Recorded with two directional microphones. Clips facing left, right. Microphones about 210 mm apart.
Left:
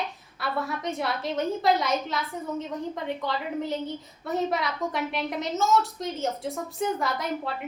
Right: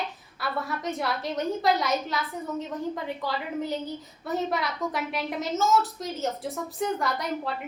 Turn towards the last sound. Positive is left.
turn(degrees=0)  # may be behind; listen again after turning